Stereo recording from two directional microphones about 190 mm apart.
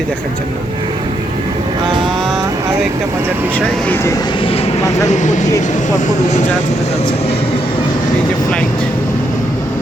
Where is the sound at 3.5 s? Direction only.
Centre (ahead or behind); by 6.4 s 40° left (ahead or behind).